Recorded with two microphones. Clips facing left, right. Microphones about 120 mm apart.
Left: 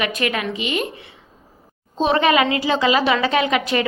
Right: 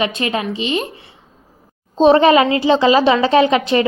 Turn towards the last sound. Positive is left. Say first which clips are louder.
# right 6 dB
turn(degrees=-30)  # may be behind; listen again after turning